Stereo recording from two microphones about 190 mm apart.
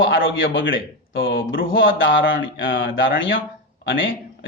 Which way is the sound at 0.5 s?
85° left.